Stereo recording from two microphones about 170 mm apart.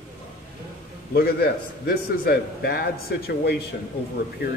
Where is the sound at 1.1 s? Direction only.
65° left (ahead or behind).